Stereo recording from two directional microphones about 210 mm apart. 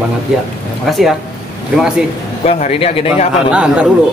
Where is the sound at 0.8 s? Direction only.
Centre (ahead or behind).